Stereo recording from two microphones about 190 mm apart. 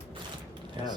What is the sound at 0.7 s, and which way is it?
Speech, 20° right (ahead or behind).